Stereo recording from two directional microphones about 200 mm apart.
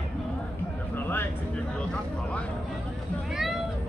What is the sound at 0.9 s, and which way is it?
Music, 10° left (ahead or behind).